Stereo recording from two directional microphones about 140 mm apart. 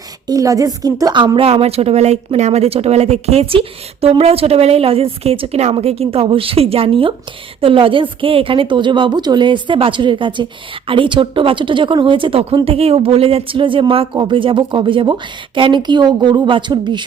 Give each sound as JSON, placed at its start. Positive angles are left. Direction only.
{"t": 0.3, "sound": "a woman's voice", "side_deg": -25}